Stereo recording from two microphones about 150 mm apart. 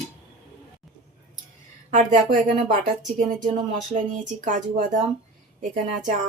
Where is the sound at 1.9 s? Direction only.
60° right (ahead or behind).